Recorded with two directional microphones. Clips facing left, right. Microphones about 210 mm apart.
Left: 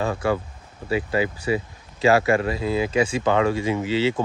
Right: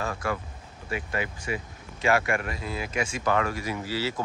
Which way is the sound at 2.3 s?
30° left (ahead or behind).